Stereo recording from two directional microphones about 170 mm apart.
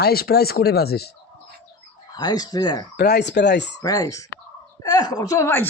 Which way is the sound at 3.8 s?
20° left (ahead or behind).